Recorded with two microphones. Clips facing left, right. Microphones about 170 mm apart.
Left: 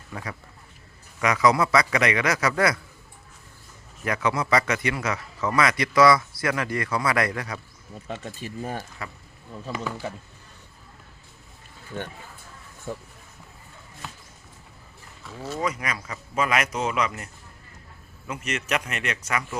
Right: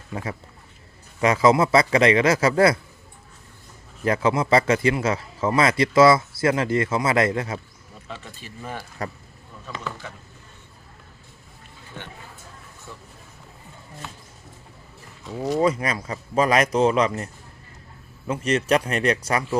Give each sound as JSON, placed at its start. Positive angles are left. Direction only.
{"t": 0.1, "sound": "speech", "side_deg": -25}
{"t": 4.0, "sound": "speech", "side_deg": -30}
{"t": 8.0, "sound": "speech", "side_deg": 45}
{"t": 9.0, "sound": "a man's voice", "side_deg": -40}
{"t": 9.7, "sound": "speech", "side_deg": 35}
{"t": 15.3, "sound": "speech", "side_deg": -15}
{"t": 15.5, "sound": "a man's voice", "side_deg": -30}
{"t": 18.3, "sound": "a man's voice", "side_deg": -30}